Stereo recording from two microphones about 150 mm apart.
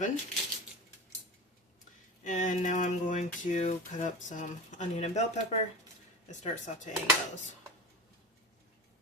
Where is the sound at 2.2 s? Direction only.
55° left (ahead or behind).